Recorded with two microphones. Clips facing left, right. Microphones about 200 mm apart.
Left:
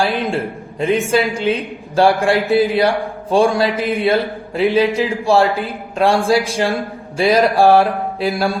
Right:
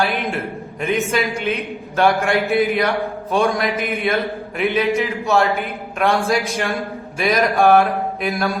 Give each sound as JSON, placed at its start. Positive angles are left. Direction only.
{"t": 0.0, "sound": "a man's voice", "side_deg": 30}